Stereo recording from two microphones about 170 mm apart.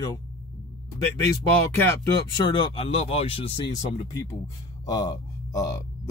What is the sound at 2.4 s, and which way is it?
Speech, 25° left (ahead or behind).